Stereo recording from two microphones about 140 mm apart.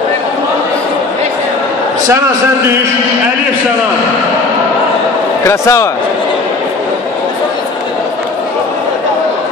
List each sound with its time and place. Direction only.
5.5 s a man's voice: 20° left (ahead or behind)